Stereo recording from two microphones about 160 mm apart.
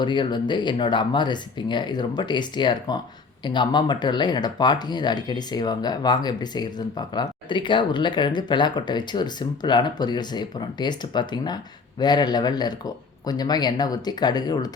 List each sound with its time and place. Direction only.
0.0 s speech: 30° left (ahead or behind)